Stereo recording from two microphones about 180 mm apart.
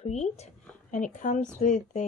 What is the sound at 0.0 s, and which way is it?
A woman's voice, 35° left (ahead or behind).